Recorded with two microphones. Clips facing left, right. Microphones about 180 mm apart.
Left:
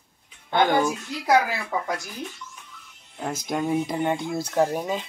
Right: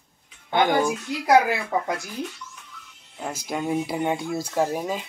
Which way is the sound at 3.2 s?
5° right (ahead or behind).